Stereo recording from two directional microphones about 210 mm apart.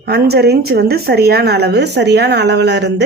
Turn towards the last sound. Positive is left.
turn(degrees=-55)  # may be behind; listen again after turning